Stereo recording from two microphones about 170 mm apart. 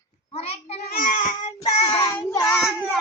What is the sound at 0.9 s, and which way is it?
Baby cry, 55° left (ahead or behind).